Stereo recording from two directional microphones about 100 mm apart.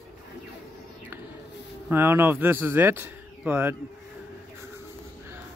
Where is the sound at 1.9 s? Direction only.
25° right (ahead or behind).